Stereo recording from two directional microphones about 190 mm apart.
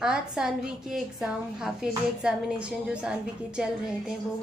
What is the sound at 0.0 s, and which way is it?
A woman's voice, 5° right (ahead or behind).